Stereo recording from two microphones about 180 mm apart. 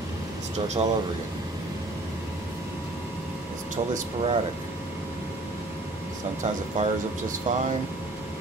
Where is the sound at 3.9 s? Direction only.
35° right (ahead or behind).